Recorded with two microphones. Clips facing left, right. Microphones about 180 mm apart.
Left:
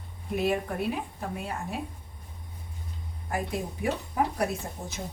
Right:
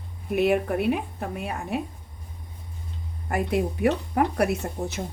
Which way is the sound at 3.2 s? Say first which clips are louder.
Right 7 dB; 65° right (ahead or behind).